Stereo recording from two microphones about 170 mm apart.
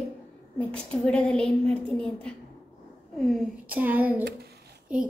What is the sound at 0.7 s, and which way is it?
A woman's voice, 5° left (ahead or behind).